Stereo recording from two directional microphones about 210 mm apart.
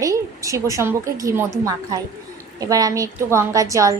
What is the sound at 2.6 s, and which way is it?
A woman's voice, 15° right (ahead or behind).